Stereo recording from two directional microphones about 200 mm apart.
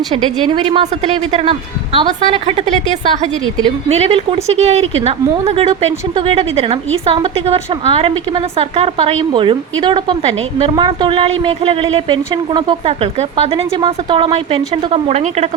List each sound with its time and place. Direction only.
0.1 s a woman's voice: 25° right (ahead or behind)
3.8 s a woman's voice: 30° right (ahead or behind)